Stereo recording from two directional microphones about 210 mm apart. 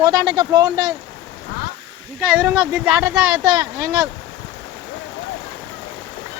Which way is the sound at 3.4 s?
20° right (ahead or behind).